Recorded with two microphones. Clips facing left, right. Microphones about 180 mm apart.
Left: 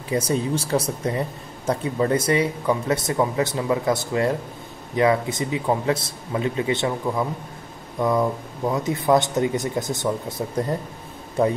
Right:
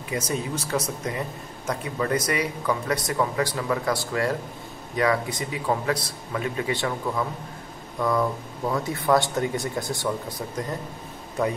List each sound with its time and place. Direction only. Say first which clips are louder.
0.1 s speech: left 6 dB; 30° left (ahead or behind)